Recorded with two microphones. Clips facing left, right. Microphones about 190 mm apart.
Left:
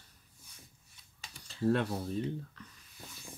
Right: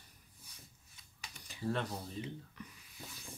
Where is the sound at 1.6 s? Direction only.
60° left (ahead or behind).